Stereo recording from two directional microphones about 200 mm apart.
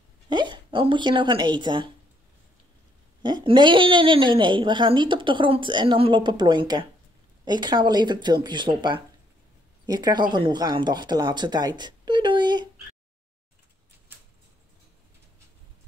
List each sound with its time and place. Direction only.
0.3 s speech: 20° right (ahead or behind)
3.2 s a woman's voice: 20° right (ahead or behind)